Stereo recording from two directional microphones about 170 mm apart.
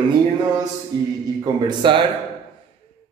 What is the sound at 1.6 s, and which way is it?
Speech, 30° right (ahead or behind).